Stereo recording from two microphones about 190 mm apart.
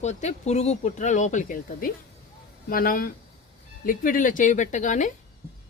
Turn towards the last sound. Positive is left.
turn(degrees=40)  # may be behind; listen again after turning